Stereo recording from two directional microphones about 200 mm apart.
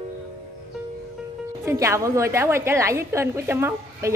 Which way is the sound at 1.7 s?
15° right (ahead or behind).